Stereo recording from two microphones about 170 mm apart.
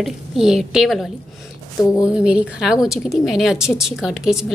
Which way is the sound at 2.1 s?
5° right (ahead or behind).